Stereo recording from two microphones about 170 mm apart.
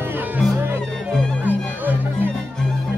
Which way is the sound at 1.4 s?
10° right (ahead or behind).